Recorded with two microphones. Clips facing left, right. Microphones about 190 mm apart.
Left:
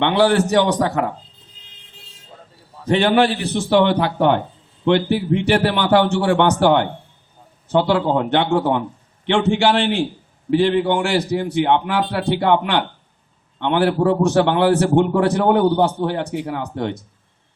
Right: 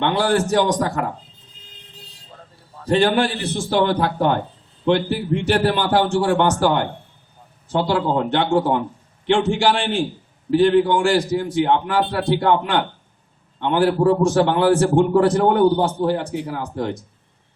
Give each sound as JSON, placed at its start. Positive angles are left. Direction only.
{"t": 0.0, "sound": "a man's voice", "side_deg": 65}
{"t": 2.9, "sound": "a man's voice", "side_deg": 65}